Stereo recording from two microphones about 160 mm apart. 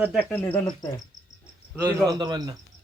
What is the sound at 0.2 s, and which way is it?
Speech, 10° left (ahead or behind).